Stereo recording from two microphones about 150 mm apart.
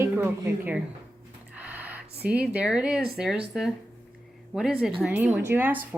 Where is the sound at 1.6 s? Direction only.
10° right (ahead or behind).